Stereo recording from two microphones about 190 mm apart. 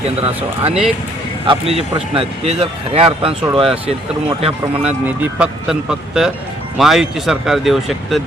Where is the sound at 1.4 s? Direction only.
30° right (ahead or behind).